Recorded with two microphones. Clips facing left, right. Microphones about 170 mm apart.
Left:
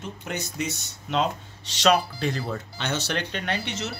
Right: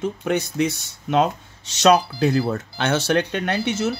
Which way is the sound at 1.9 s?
40° right (ahead or behind).